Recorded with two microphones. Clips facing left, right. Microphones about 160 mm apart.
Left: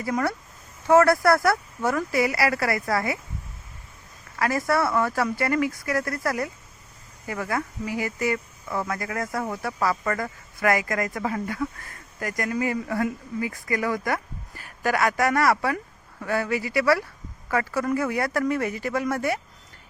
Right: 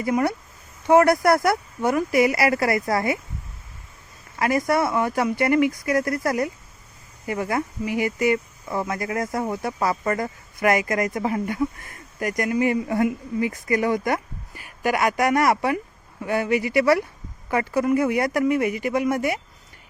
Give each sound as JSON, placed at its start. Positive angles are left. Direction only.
{"t": 0.0, "sound": "speech", "side_deg": -20}
{"t": 4.4, "sound": "speech", "side_deg": -20}